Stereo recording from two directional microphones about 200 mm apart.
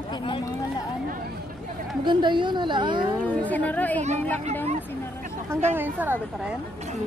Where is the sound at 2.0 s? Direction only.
25° right (ahead or behind).